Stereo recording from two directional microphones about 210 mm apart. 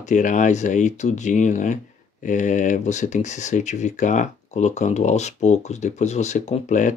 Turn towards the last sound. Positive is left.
turn(degrees=35)  # may be behind; listen again after turning